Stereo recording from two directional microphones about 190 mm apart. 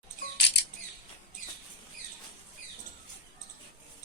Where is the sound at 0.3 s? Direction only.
65° left (ahead or behind).